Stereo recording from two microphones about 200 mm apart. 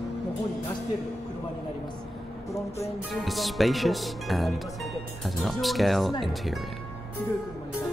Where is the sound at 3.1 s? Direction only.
Centre (ahead or behind).